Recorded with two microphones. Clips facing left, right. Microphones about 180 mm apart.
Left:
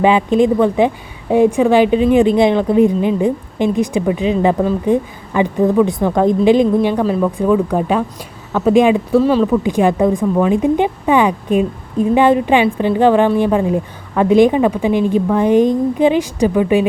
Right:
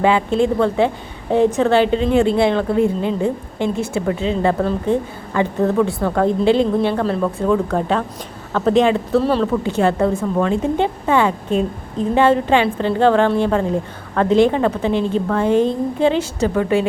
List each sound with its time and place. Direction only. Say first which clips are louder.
0.0 s a woman's voice: left 4 dB; 15° left (ahead or behind)
9.2 s speech: left 4 dB; centre (ahead or behind)
9.5 s a woman's voice: left 3 dB; 15° left (ahead or behind)